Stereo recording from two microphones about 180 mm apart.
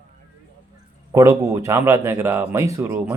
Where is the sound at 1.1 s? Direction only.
15° right (ahead or behind).